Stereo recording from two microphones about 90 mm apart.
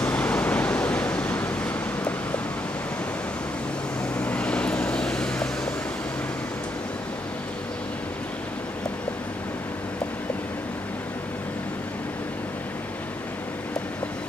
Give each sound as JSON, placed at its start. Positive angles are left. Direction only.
{"t": 0.0, "sound": "waves", "side_deg": 15}
{"t": 4.2, "sound": "vehicle", "side_deg": 15}